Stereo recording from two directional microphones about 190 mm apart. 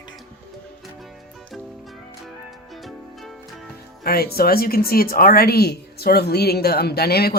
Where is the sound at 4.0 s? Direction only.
55° left (ahead or behind).